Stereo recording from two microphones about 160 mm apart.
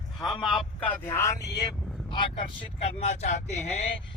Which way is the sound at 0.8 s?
10° left (ahead or behind).